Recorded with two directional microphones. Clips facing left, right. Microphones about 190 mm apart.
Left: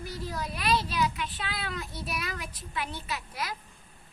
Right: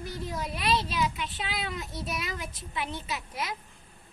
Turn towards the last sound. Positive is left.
turn(degrees=-20)  # may be behind; listen again after turning